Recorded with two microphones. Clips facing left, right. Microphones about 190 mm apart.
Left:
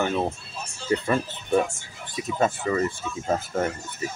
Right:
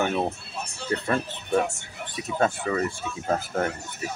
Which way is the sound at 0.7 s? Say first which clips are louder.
Left 4 dB; 65° right (ahead or behind).